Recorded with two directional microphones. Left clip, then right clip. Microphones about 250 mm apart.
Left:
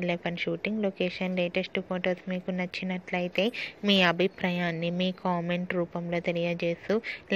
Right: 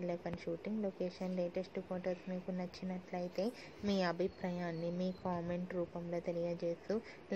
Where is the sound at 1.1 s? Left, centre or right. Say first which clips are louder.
Left 11 dB; left.